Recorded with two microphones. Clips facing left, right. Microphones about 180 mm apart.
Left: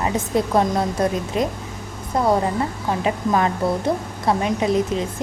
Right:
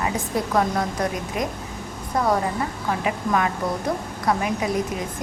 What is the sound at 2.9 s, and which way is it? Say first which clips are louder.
A woman's voice: left 2 dB; 30° left (ahead or behind).